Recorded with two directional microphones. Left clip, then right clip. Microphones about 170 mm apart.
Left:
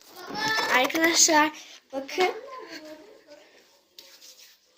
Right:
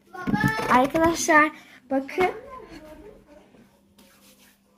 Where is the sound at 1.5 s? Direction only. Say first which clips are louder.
Right 7 dB; 20° right (ahead or behind).